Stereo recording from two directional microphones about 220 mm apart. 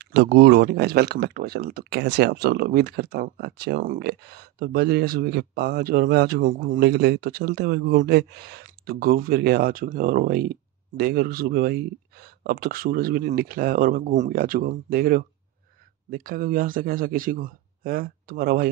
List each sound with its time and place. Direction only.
0.0 s a man's voice: 50° right (ahead or behind)